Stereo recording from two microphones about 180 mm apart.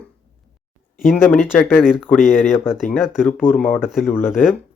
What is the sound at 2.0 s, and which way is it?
Speech, centre (ahead or behind).